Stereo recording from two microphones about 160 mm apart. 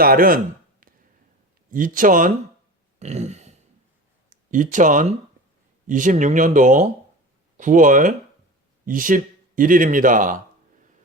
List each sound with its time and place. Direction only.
0.0 s speech: 65° right (ahead or behind)
1.7 s speech: 55° right (ahead or behind)
3.0 s a sound: 45° right (ahead or behind)
4.3 s speech: 55° right (ahead or behind)